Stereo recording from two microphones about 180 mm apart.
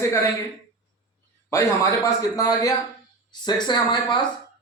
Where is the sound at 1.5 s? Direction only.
15° left (ahead or behind).